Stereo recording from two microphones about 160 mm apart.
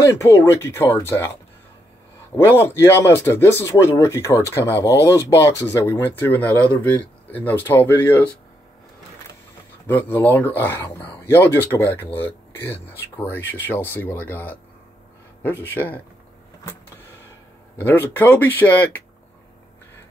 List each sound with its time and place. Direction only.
0.0 s speech: 15° left (ahead or behind)
2.3 s speech: 15° left (ahead or behind)
9.8 s speech: 10° left (ahead or behind)
17.7 s speech: 10° left (ahead or behind)